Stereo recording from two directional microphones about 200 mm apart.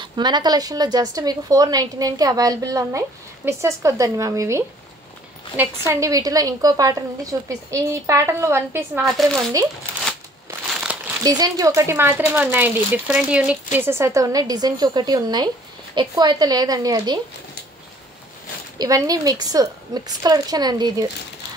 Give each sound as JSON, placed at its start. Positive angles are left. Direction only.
{"t": 0.0, "sound": "a woman's voice", "side_deg": -20}
{"t": 9.0, "sound": "speech", "side_deg": 0}
{"t": 10.7, "sound": "crumpling", "side_deg": -5}
{"t": 11.2, "sound": "a woman's voice", "side_deg": -20}
{"t": 18.8, "sound": "a woman's voice", "side_deg": -15}